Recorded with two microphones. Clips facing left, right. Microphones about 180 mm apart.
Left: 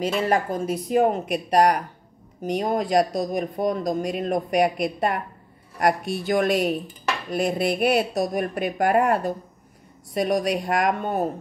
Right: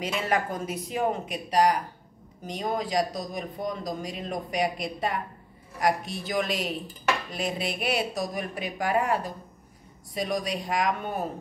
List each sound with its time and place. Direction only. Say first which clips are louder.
0.0 s speech: left 5 dB; 35° left (ahead or behind)
1.3 s speech: left 4 dB; 60° left (ahead or behind)
7.3 s a sound: left 8 dB; 55° left (ahead or behind)
8.2 s speech: left 7 dB; 55° left (ahead or behind)